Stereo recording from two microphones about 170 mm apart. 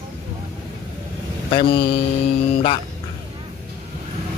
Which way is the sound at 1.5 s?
30° left (ahead or behind).